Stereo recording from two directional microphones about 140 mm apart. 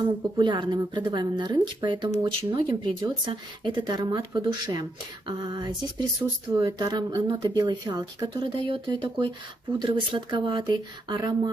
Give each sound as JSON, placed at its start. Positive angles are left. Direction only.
{"t": 0.4, "sound": "speech", "side_deg": -35}